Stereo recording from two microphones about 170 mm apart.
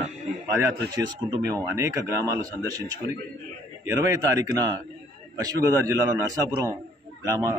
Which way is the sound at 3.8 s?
20° right (ahead or behind).